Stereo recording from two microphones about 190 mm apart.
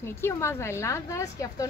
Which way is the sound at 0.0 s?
15° left (ahead or behind).